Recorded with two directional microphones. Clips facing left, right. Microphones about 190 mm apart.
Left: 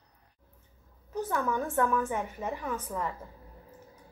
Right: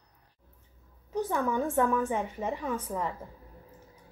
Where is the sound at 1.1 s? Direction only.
15° right (ahead or behind).